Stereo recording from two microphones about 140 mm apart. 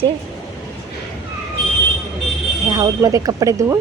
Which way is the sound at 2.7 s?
25° right (ahead or behind).